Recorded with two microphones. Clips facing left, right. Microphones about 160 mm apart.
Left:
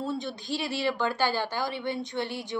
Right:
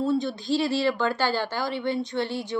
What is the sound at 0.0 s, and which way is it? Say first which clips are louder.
A woman's voice: right 7 dB; 20° left (ahead or behind).